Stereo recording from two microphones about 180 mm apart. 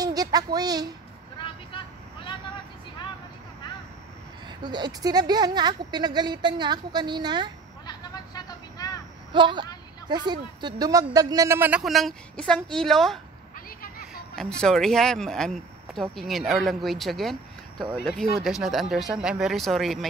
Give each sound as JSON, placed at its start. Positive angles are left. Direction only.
{"t": 0.0, "sound": "a sound", "side_deg": -20}
{"t": 4.5, "sound": "a woman's voice", "side_deg": -25}
{"t": 7.8, "sound": "a sound", "side_deg": 20}
{"t": 9.3, "sound": "a woman's voice", "side_deg": -25}
{"t": 11.8, "sound": "speech", "side_deg": 0}
{"t": 14.3, "sound": "speech", "side_deg": 5}